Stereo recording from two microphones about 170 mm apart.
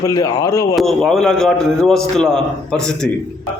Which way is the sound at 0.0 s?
20° left (ahead or behind).